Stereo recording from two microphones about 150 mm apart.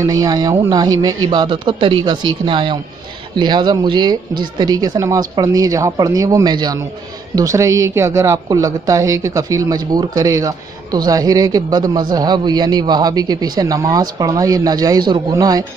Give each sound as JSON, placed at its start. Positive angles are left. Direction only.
{"t": 0.0, "sound": "speech", "side_deg": -25}